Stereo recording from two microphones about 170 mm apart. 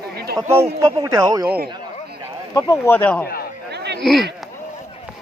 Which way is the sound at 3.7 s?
75° right (ahead or behind).